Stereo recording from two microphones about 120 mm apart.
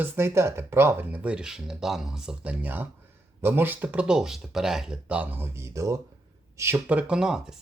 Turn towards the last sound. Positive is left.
turn(degrees=-5)  # may be behind; listen again after turning